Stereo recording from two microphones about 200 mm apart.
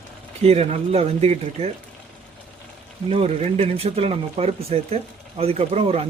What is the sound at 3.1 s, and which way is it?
Speech, 30° right (ahead or behind).